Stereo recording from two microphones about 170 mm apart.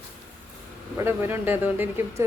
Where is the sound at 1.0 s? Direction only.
15° right (ahead or behind).